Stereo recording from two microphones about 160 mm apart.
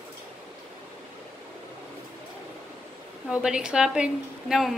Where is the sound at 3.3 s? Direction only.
5° right (ahead or behind).